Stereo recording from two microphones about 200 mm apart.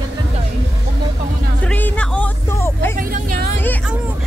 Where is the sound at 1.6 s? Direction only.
10° left (ahead or behind).